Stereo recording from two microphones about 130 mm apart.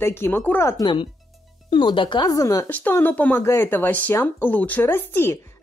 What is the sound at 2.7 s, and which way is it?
Speech, 15° left (ahead or behind).